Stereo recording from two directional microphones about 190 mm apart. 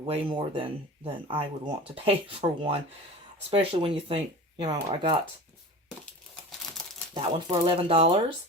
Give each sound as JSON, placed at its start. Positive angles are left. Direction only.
{"t": 0.0, "sound": "speech", "side_deg": -30}
{"t": 7.1, "sound": "speech", "side_deg": -25}